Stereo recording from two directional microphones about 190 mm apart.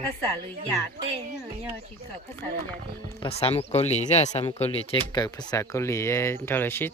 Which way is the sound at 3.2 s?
30° left (ahead or behind).